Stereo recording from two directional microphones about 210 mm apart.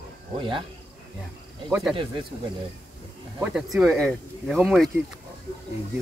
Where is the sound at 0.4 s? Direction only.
25° right (ahead or behind).